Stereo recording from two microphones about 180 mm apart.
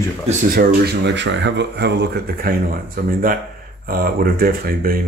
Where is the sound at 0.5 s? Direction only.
60° right (ahead or behind).